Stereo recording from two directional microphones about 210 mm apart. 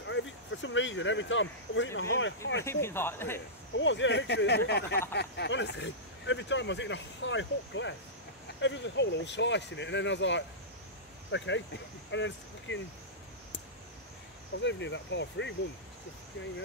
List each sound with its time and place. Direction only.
0.0 s speech: 65° left (ahead or behind)
2.6 s speech: 10° left (ahead or behind)
3.7 s speech: 60° left (ahead or behind)
14.6 s speech: 60° left (ahead or behind)